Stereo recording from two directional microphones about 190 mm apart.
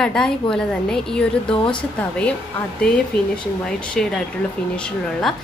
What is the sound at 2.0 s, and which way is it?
Speech, 5° left (ahead or behind).